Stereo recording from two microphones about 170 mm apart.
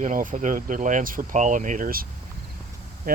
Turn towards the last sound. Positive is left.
turn(degrees=-60)  # may be behind; listen again after turning